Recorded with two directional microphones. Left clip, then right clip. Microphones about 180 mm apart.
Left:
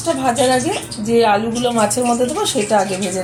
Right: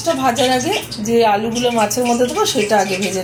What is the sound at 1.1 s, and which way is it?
Speech, 10° left (ahead or behind).